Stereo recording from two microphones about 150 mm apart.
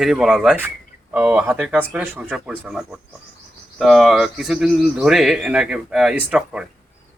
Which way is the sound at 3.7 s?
Centre (ahead or behind).